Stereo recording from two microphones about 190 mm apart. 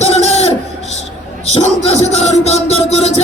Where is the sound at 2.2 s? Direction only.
35° left (ahead or behind).